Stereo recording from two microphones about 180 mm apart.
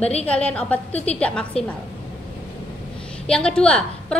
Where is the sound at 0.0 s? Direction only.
35° left (ahead or behind).